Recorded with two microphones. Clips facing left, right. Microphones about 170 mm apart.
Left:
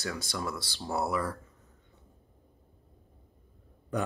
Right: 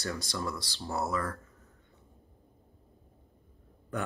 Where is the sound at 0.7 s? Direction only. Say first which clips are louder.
Left 2 dB; 15° left (ahead or behind).